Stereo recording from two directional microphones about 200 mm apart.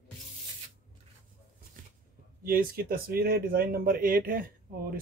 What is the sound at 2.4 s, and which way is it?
Speech, 45° right (ahead or behind).